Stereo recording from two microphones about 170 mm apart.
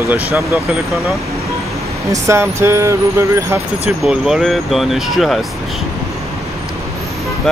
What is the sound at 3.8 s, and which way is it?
Speech, 5° right (ahead or behind).